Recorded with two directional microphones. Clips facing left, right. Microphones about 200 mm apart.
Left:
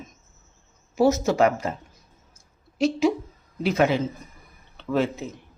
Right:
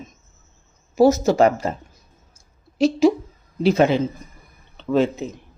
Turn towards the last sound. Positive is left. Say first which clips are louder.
# right 5 dB
turn(degrees=-20)  # may be behind; listen again after turning